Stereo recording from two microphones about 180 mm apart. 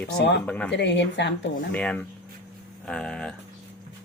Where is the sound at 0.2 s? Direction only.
75° left (ahead or behind).